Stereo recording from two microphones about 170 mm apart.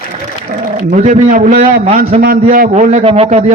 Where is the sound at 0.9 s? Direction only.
50° right (ahead or behind).